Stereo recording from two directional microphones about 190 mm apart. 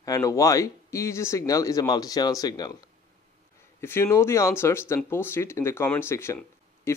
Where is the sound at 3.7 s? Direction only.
10° left (ahead or behind).